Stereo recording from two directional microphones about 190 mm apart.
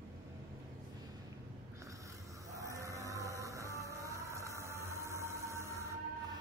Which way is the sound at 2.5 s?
15° right (ahead or behind).